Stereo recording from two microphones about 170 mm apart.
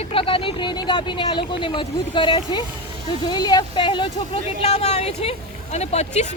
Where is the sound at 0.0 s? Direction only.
30° left (ahead or behind).